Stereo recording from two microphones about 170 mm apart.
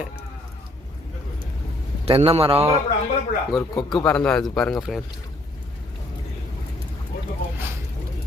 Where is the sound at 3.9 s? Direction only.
5° left (ahead or behind).